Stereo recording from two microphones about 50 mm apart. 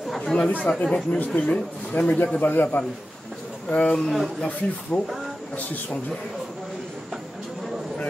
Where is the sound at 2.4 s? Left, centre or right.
Left.